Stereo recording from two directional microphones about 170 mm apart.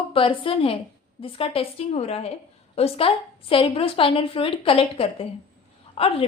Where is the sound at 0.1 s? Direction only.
30° left (ahead or behind).